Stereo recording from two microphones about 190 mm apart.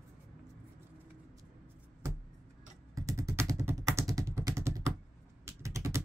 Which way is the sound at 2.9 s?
15° right (ahead or behind).